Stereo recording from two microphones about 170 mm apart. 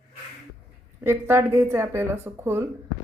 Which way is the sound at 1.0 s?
15° right (ahead or behind).